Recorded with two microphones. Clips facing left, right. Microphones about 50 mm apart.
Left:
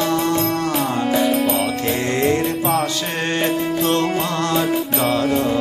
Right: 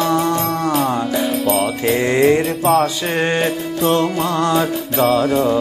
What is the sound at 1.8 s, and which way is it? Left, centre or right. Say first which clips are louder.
Music: right 8 dB; centre.